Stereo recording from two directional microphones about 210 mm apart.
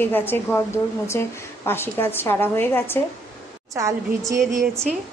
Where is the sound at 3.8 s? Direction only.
15° right (ahead or behind).